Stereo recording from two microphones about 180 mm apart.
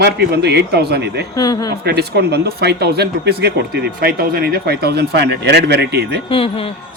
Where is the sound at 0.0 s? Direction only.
65° right (ahead or behind).